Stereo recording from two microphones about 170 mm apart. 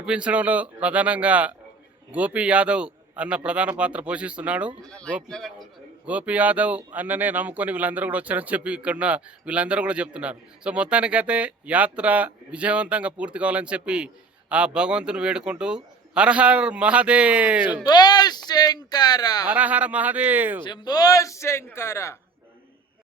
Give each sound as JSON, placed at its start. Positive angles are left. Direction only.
{"t": 0.0, "sound": "speech", "side_deg": -5}
{"t": 4.8, "sound": "speech", "side_deg": 5}
{"t": 17.8, "sound": "speech", "side_deg": 25}
{"t": 19.5, "sound": "speech", "side_deg": -10}
{"t": 20.7, "sound": "a man's voice", "side_deg": 25}